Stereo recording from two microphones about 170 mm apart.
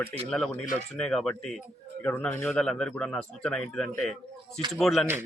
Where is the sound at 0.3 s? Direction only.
5° left (ahead or behind).